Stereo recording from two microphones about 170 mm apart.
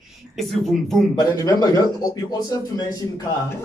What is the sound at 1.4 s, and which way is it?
A man's voice, 20° left (ahead or behind).